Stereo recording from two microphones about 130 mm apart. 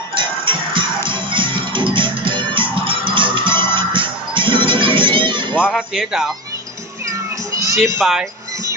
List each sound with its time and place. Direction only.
0.2 s music: 40° right (ahead or behind)
5.7 s speech: 5° right (ahead or behind)
7.1 s music: 25° right (ahead or behind)
8.0 s speech: 5° right (ahead or behind)